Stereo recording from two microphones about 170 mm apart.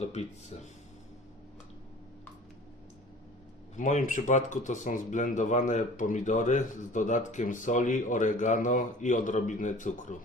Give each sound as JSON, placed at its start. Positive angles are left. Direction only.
{"t": 0.0, "sound": "speech", "side_deg": 40}
{"t": 3.8, "sound": "speech", "side_deg": 45}